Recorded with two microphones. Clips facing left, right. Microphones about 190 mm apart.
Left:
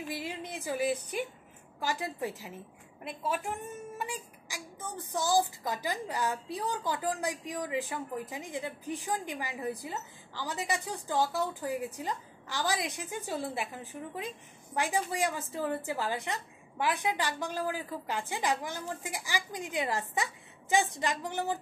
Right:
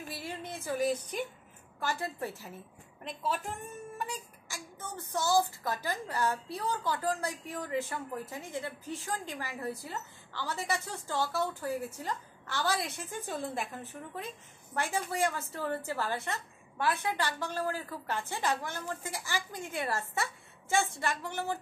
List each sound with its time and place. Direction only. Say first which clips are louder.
0.1 s a woman's voice: even; 15° left (ahead or behind)
4.0 s music: left 1 dB; 10° left (ahead or behind)
5.1 s a woman's voice: even; 15° left (ahead or behind)